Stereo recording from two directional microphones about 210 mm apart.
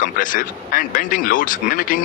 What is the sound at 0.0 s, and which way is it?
Speech, 40° left (ahead or behind).